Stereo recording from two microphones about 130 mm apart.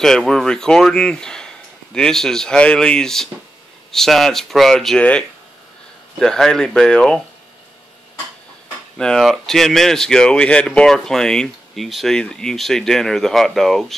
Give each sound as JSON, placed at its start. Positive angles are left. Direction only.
{"t": 0.0, "sound": "speech", "side_deg": 5}
{"t": 8.9, "sound": "speech", "side_deg": 5}